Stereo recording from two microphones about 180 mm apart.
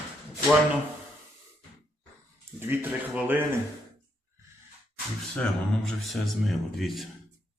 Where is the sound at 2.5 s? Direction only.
10° right (ahead or behind).